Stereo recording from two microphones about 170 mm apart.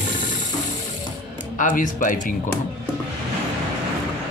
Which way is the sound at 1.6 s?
50° left (ahead or behind).